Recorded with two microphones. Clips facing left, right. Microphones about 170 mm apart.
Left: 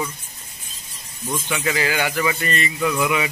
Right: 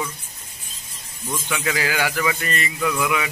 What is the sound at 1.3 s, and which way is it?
A man's voice, 5° left (ahead or behind).